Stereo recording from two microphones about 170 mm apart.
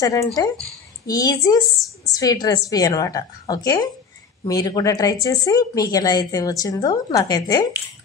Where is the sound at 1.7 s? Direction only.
Centre (ahead or behind).